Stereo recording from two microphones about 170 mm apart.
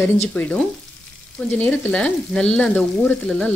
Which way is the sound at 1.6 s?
5° left (ahead or behind).